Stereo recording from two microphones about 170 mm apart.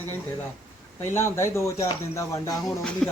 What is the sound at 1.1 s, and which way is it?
Speech, 15° left (ahead or behind).